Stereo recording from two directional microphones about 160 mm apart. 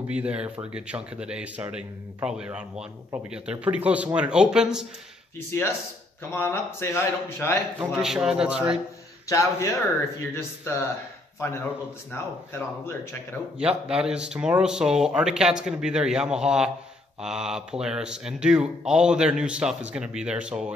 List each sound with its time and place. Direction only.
0.1 s speech: 5° right (ahead or behind)
6.3 s speech: 15° left (ahead or behind)
7.8 s speech: 5° right (ahead or behind)
9.3 s a man's voice: 20° left (ahead or behind)
12.1 s speech: 15° left (ahead or behind)
13.6 s speech: 5° right (ahead or behind)